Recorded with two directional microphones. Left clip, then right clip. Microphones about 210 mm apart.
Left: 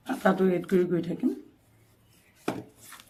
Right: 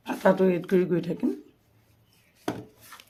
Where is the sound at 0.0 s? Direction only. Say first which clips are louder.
Right 3 dB; 55° right (ahead or behind).